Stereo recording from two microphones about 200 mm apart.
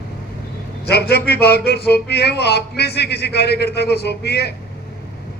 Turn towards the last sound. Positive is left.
turn(degrees=55)  # may be behind; listen again after turning